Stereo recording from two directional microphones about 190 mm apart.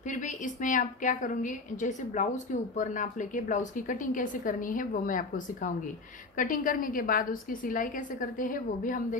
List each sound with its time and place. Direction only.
0.1 s a woman's voice: 40° left (ahead or behind)